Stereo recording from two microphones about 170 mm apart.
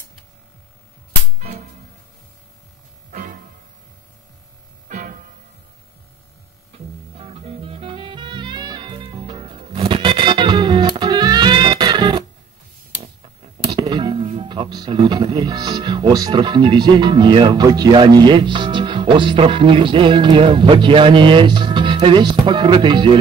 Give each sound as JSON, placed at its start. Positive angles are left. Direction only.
{"t": 3.1, "sound": "music", "side_deg": -55}
{"t": 4.8, "sound": "music", "side_deg": -50}
{"t": 7.2, "sound": "music", "side_deg": -35}
{"t": 13.7, "sound": "speech", "side_deg": -25}